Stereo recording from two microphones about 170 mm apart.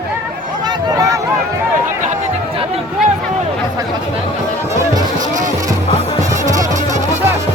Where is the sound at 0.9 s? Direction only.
20° right (ahead or behind).